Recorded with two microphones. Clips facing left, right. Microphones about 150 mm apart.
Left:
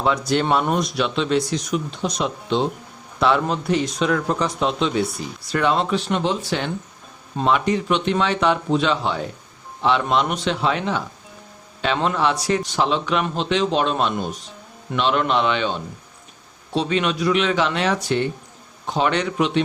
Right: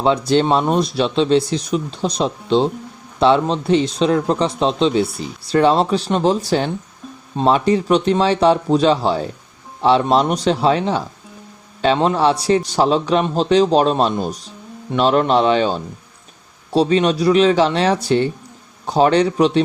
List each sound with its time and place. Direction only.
0.0 s a man's voice: 30° right (ahead or behind)